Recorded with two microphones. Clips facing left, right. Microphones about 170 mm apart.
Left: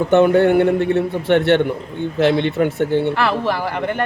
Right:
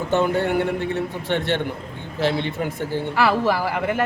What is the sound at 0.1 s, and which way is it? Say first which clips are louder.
A man's voice: left 8 dB; 60° left (ahead or behind).